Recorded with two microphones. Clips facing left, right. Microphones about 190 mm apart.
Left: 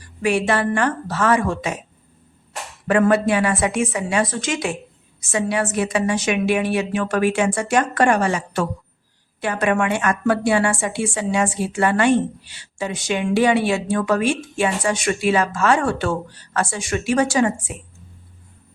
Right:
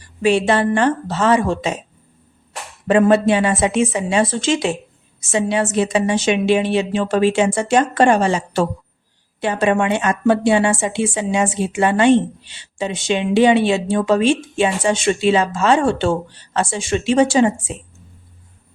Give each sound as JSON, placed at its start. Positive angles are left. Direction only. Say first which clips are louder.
{"t": 0.2, "sound": "a woman's voice", "louder": "right 4 dB", "side_deg": -25}
{"t": 2.8, "sound": "a woman's voice", "louder": "right 3 dB", "side_deg": -25}